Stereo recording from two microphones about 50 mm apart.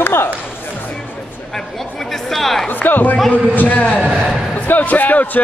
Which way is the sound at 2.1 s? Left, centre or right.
Centre.